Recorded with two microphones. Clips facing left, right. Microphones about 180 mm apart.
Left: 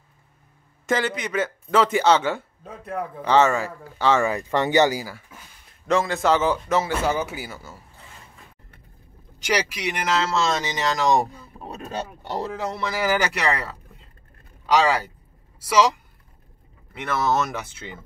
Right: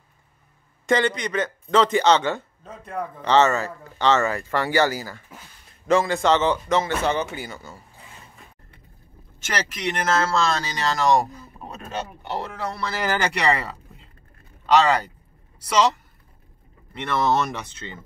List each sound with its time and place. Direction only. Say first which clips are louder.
0.8 s speech: right 3 dB; 5° left (ahead or behind)
5.9 s speech: right 1 dB; centre (ahead or behind)
9.4 s speech: left 3 dB; 10° left (ahead or behind)
12.5 s speech: left 2 dB; 20° left (ahead or behind)
12.9 s speech: left 1 dB; 10° left (ahead or behind)